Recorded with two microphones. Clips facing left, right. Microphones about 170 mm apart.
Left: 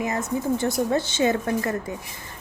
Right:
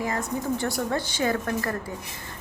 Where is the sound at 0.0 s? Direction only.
20° left (ahead or behind).